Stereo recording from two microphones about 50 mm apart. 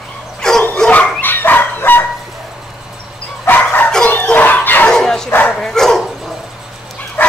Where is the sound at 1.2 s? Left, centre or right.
Left.